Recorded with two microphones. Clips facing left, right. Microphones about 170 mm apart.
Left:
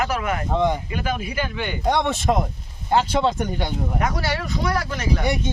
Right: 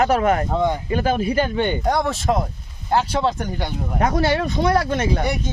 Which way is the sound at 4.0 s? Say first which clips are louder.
Right 8 dB; 25° right (ahead or behind).